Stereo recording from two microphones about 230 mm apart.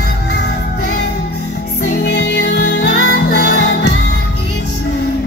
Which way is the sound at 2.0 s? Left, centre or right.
Left.